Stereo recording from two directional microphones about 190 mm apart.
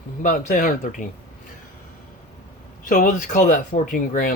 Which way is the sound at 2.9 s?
45° left (ahead or behind).